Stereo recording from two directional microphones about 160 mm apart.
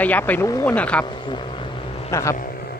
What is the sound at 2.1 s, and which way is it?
Speech, 20° left (ahead or behind).